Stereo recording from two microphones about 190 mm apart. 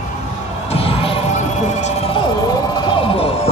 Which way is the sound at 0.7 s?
30° left (ahead or behind).